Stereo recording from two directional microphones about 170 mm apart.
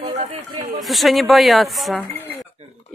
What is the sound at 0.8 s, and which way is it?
Speech, centre (ahead or behind).